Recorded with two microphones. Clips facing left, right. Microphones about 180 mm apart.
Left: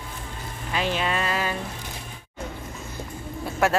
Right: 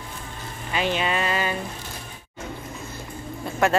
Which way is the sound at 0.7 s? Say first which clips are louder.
Right 1 dB; centre (ahead or behind).